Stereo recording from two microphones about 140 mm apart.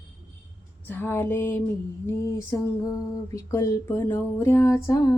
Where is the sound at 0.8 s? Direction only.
15° left (ahead or behind).